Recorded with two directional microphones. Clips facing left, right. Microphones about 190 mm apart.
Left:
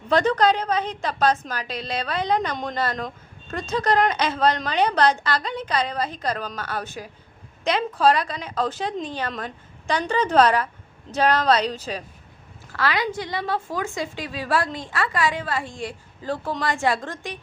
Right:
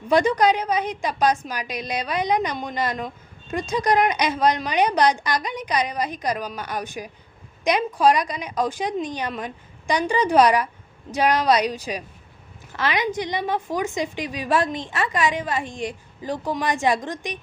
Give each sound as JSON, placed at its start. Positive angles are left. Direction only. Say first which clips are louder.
{"t": 0.1, "sound": "a woman's voice", "louder": "right 1 dB", "side_deg": -10}